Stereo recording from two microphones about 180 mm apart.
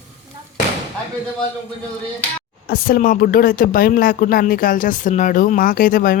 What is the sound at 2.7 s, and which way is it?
Speech, 55° left (ahead or behind).